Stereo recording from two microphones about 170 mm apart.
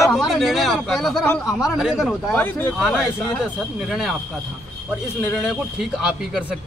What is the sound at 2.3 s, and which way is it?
Speech, 10° left (ahead or behind).